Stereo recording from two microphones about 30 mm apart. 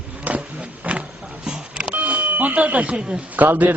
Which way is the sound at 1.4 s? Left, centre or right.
Right.